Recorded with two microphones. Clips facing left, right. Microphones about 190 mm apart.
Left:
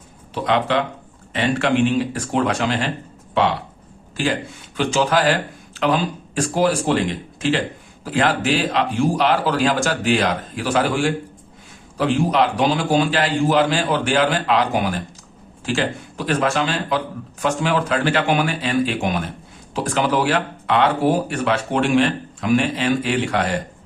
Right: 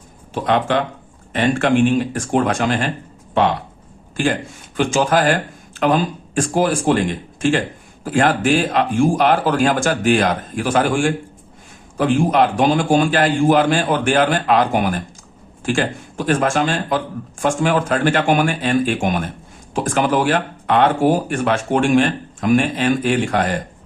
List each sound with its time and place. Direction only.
0.3 s speech: 50° right (ahead or behind)
4.8 s speech: 45° right (ahead or behind)